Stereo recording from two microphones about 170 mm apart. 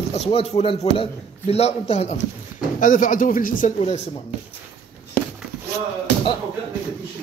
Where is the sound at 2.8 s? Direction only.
50° left (ahead or behind).